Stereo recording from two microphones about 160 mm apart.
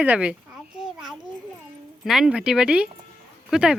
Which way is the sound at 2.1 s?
5° right (ahead or behind).